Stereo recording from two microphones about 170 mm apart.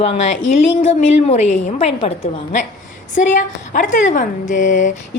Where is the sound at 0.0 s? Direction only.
40° left (ahead or behind).